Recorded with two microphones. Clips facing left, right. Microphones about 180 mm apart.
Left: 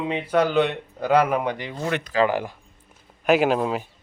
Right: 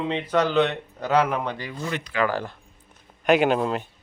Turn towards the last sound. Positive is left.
turn(degrees=5)  # may be behind; listen again after turning